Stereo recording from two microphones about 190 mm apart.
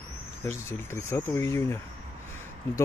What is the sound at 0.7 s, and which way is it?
Speech, 15° left (ahead or behind).